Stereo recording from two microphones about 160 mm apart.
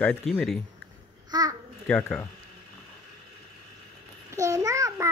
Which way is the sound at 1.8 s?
5° left (ahead or behind).